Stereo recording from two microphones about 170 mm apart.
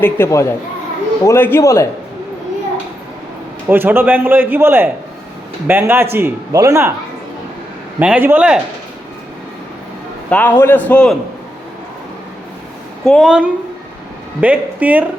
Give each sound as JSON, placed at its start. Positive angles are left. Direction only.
{"t": 0.0, "sound": "a man's voice", "side_deg": 15}
{"t": 3.7, "sound": "a man's voice", "side_deg": -10}
{"t": 7.9, "sound": "a man's voice", "side_deg": -10}
{"t": 10.2, "sound": "a man's voice", "side_deg": 10}
{"t": 13.1, "sound": "a woman's voice", "side_deg": 0}